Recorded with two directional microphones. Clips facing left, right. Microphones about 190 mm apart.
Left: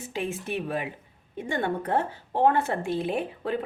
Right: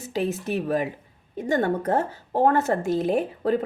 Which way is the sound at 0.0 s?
40° right (ahead or behind).